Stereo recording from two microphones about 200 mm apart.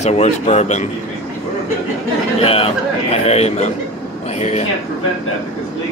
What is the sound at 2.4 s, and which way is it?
A man's voice, 30° left (ahead or behind).